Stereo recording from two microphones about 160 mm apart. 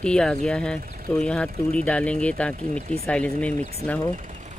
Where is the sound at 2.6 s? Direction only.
45° right (ahead or behind).